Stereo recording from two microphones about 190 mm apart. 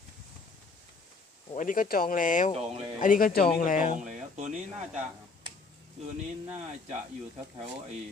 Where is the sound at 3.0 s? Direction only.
45° left (ahead or behind).